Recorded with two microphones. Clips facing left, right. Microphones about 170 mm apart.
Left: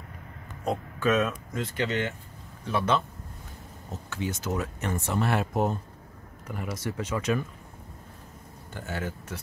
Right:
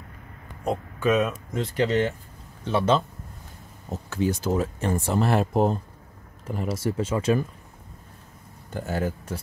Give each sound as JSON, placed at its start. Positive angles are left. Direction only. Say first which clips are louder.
{"t": 0.7, "sound": "speech", "louder": "right 2 dB", "side_deg": 0}
{"t": 1.5, "sound": "speech", "louder": "right 6 dB", "side_deg": -35}
{"t": 4.1, "sound": "speech", "louder": "right 7 dB", "side_deg": -35}
{"t": 8.7, "sound": "speech", "louder": "right 7 dB", "side_deg": -40}